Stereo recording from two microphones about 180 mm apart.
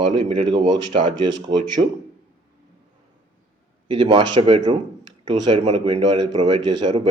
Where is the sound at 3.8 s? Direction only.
25° right (ahead or behind).